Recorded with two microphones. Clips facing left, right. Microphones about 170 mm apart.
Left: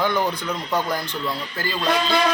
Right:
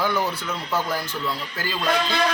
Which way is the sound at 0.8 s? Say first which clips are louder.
Left 1 dB; 5° right (ahead or behind).